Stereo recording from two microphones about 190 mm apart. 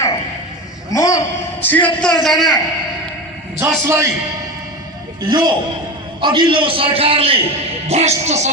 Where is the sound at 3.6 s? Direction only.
15° right (ahead or behind).